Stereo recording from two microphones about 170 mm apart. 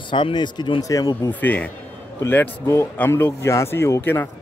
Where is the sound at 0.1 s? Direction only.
25° left (ahead or behind).